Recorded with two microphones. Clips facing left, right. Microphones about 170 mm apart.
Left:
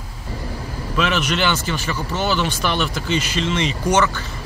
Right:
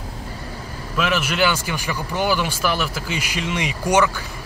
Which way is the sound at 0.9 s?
5° right (ahead or behind).